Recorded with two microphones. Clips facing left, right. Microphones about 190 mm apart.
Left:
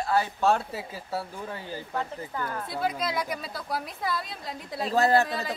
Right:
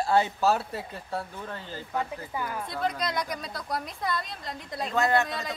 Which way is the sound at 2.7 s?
5° left (ahead or behind).